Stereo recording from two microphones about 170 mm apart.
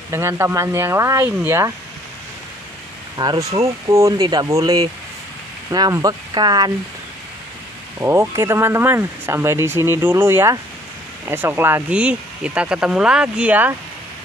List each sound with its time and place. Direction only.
0.1 s speech: 15° right (ahead or behind)
3.2 s speech: 20° right (ahead or behind)
8.0 s speech: 15° right (ahead or behind)